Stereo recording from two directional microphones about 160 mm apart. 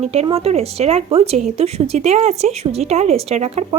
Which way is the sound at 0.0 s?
40° right (ahead or behind).